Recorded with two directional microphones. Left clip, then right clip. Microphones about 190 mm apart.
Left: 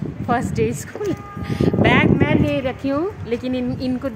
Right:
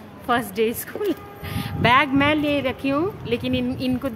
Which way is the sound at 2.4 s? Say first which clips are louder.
Left 1 dB; 15° left (ahead or behind).